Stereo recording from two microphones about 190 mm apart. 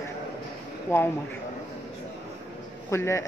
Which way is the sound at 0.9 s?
15° left (ahead or behind).